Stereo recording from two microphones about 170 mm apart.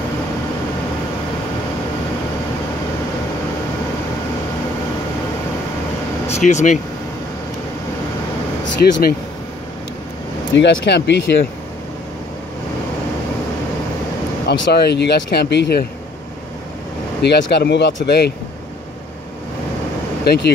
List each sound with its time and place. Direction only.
6.2 s speech: 40° left (ahead or behind)
8.8 s speech: 65° left (ahead or behind)
10.5 s speech: 90° left
14.4 s speech: 85° left
17.2 s speech: 75° left (ahead or behind)
18.0 s speech: 80° left